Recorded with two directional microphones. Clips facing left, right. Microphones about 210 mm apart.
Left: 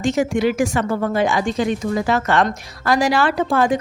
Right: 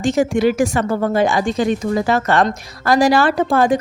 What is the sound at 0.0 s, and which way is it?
A woman's voice, 35° right (ahead or behind).